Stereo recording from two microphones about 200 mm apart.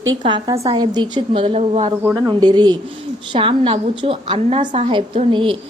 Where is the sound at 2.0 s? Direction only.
15° right (ahead or behind).